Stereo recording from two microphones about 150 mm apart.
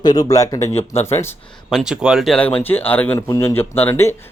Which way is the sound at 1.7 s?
5° right (ahead or behind).